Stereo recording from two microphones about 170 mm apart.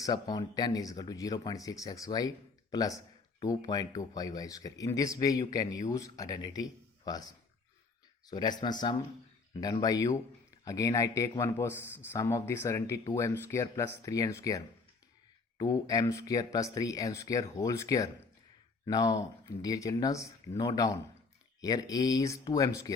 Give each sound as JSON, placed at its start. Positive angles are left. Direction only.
{"t": 0.0, "sound": "speech", "side_deg": 20}
{"t": 3.4, "sound": "a man's voice", "side_deg": 20}